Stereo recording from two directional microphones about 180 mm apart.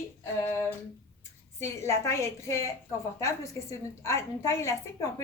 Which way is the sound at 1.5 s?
15° left (ahead or behind).